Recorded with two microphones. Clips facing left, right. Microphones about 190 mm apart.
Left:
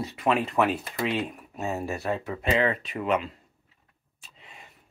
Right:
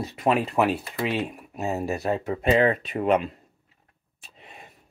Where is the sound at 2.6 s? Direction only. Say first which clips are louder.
Right 4 dB; 35° right (ahead or behind).